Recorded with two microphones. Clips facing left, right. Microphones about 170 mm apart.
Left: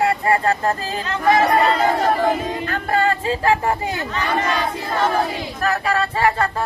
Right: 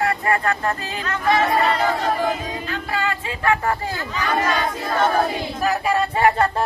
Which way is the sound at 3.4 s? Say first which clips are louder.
Right 1 dB; 30° left (ahead or behind).